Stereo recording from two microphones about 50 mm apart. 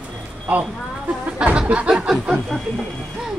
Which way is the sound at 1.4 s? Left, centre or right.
Centre.